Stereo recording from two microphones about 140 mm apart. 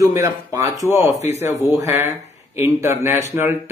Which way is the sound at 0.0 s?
20° right (ahead or behind).